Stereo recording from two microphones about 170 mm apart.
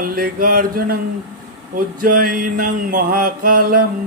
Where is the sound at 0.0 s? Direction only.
60° right (ahead or behind).